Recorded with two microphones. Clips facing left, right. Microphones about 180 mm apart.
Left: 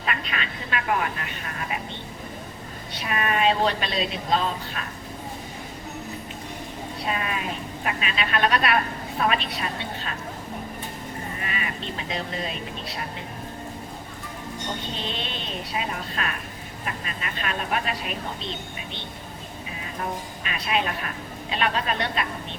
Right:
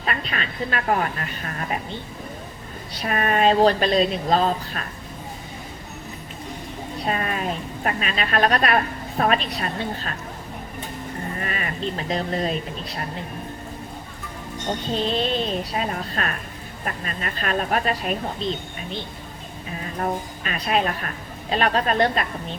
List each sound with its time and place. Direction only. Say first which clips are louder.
0.0 s speech: right 2 dB; 40° right (ahead or behind)
3.0 s speech: right 4 dB; 40° right (ahead or behind)
7.0 s a woman's voice: right 4 dB; 45° right (ahead or behind)
11.3 s speech: right 4 dB; 45° right (ahead or behind)
14.9 s a woman's voice: right 9 dB; 35° right (ahead or behind)